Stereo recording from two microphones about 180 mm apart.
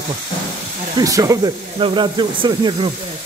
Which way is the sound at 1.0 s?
20° right (ahead or behind).